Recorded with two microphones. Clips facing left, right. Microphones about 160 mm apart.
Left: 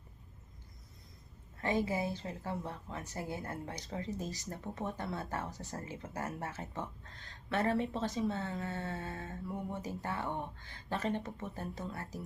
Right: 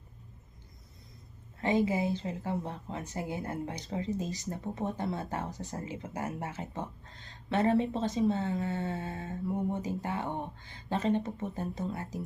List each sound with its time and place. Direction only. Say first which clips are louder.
1.6 s a woman's voice: right 5 dB; 20° right (ahead or behind)